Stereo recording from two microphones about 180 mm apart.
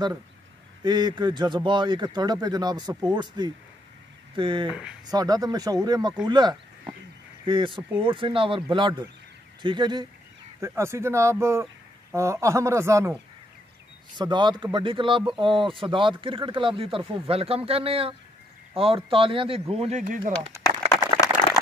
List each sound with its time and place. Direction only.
0.8 s a man's voice: 25° right (ahead or behind)
4.6 s speech: 5° right (ahead or behind)
5.1 s a man's voice: 20° right (ahead or behind); by 20.3 s 45° right (ahead or behind)